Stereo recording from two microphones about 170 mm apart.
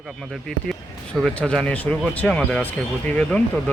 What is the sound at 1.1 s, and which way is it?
Speech, 5° left (ahead or behind).